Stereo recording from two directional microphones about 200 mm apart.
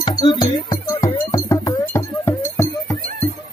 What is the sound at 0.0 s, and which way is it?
Music, 20° left (ahead or behind).